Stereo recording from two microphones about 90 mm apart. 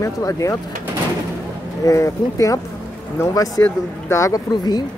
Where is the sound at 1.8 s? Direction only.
40° left (ahead or behind).